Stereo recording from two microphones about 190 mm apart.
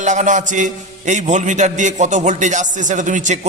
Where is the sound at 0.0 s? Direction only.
40° right (ahead or behind).